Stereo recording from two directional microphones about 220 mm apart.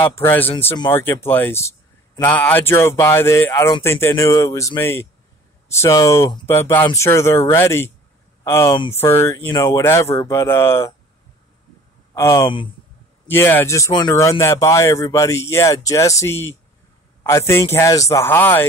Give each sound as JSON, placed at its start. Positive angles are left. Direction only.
{"t": 0.2, "sound": "a man's voice", "side_deg": 10}
{"t": 12.1, "sound": "speech", "side_deg": 15}
{"t": 13.3, "sound": "a man's voice", "side_deg": 10}